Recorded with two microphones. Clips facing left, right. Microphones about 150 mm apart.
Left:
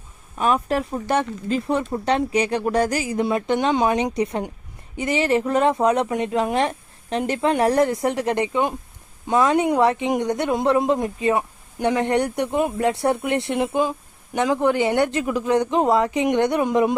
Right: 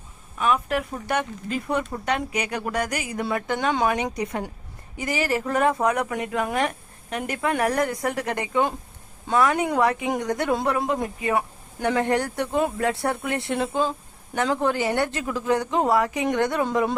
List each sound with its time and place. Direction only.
0.3 s a woman's voice: 35° left (ahead or behind); by 16.9 s 20° left (ahead or behind)